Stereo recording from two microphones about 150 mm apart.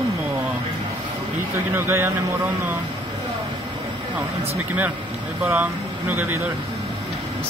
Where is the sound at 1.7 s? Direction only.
15° right (ahead or behind).